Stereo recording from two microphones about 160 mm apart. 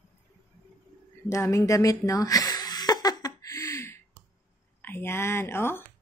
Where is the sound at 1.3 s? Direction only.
20° left (ahead or behind).